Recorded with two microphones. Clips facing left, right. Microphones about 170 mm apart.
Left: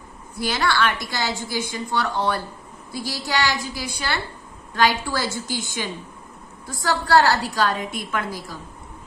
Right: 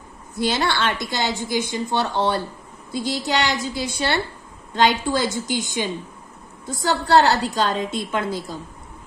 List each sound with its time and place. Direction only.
0.4 s a woman's voice: 25° right (ahead or behind)